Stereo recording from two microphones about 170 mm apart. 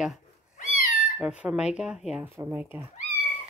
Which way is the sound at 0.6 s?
55° left (ahead or behind).